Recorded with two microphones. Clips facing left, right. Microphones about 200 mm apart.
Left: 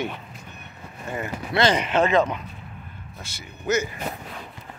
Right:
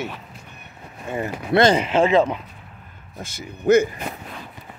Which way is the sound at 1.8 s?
30° right (ahead or behind).